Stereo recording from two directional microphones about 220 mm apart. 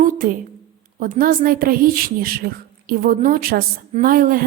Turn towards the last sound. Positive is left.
turn(degrees=-40)  # may be behind; listen again after turning